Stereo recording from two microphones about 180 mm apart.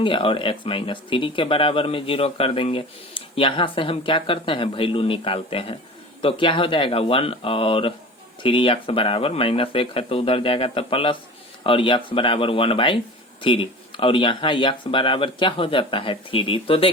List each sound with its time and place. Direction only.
0.0 s speech: 30° left (ahead or behind)